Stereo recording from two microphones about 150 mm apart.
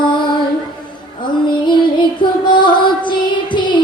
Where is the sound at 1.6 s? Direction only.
30° left (ahead or behind).